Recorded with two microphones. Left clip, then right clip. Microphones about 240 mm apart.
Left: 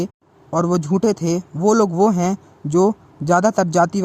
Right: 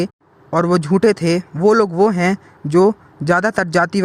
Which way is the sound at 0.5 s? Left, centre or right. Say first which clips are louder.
Right 3 dB; centre.